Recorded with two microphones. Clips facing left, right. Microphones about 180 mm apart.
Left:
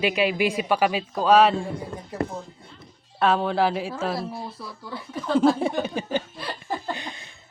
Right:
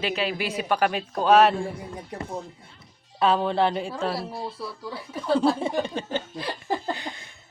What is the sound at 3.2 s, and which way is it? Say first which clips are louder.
Speech: even; centre (ahead or behind).